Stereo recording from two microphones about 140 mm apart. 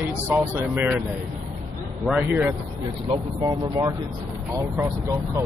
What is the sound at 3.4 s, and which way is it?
Speech, 25° right (ahead or behind).